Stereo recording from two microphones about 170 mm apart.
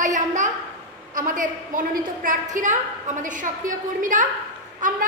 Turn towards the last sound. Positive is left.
turn(degrees=-50)  # may be behind; listen again after turning